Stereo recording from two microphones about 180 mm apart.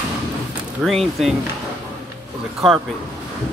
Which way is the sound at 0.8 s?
Centre (ahead or behind).